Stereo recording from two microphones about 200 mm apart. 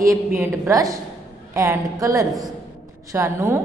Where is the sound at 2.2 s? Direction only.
Centre (ahead or behind).